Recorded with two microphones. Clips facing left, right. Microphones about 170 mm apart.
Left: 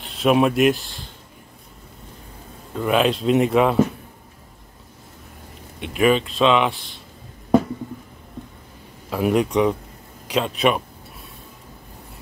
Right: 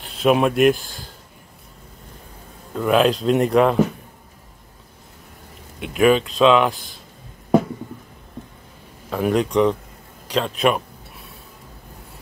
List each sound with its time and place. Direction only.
0.0 s speech: centre (ahead or behind)
2.7 s speech: centre (ahead or behind)
5.8 s speech: centre (ahead or behind)
9.1 s speech: 5° left (ahead or behind)
10.3 s a sound: centre (ahead or behind)